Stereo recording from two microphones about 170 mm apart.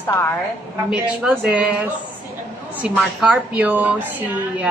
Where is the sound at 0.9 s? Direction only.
5° right (ahead or behind).